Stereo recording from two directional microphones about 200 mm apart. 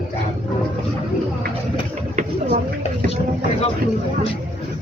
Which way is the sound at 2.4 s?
30° left (ahead or behind).